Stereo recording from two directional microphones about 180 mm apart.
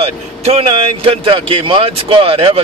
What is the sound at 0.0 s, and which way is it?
Speech, 35° right (ahead or behind).